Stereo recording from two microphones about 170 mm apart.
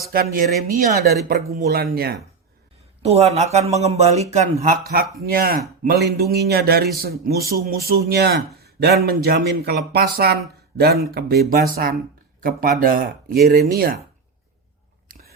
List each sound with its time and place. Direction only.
0.1 s speech: 60° right (ahead or behind)
3.0 s speech: 40° right (ahead or behind)
5.2 s speech: 60° right (ahead or behind)
11.5 s speech: 60° right (ahead or behind)
15.0 s biting: 55° right (ahead or behind)